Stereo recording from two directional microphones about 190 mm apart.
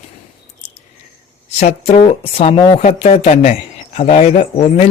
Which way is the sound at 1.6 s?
35° left (ahead or behind).